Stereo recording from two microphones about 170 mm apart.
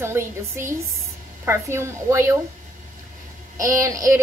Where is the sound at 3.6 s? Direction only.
20° right (ahead or behind).